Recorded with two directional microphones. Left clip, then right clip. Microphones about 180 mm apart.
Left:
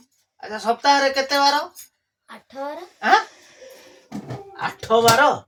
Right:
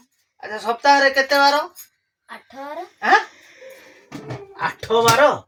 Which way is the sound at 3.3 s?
35° left (ahead or behind).